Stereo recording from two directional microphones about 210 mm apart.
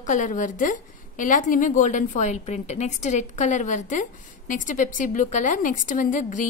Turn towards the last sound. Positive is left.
turn(degrees=40)  # may be behind; listen again after turning